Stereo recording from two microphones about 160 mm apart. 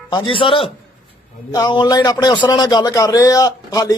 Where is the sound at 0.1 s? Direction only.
35° left (ahead or behind).